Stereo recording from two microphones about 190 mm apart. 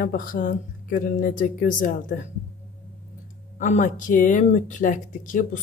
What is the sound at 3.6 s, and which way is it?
Speech, 40° left (ahead or behind).